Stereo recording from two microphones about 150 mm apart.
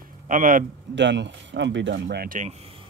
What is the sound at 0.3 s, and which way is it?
Speech, 65° right (ahead or behind).